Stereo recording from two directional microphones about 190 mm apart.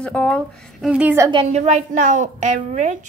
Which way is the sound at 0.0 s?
5° left (ahead or behind).